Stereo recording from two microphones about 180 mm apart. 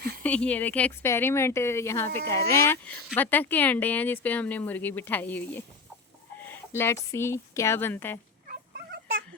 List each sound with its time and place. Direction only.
0.2 s speech: 5° left (ahead or behind)
8.4 s cat: 60° right (ahead or behind)